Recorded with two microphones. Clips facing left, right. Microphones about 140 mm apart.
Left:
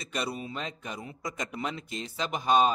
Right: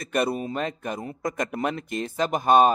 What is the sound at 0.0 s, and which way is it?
A man's voice, 50° right (ahead or behind).